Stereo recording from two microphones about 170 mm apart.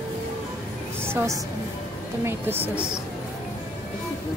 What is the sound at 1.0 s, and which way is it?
A woman's voice, 15° right (ahead or behind).